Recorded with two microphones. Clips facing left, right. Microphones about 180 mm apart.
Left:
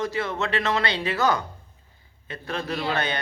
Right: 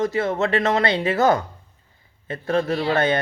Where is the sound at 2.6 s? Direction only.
50° right (ahead or behind).